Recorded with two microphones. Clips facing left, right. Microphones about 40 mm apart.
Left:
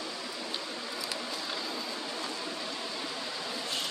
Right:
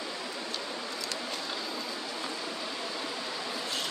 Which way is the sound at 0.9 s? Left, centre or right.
Centre.